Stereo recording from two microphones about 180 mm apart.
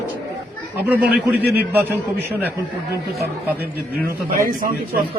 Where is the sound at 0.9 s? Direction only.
10° right (ahead or behind).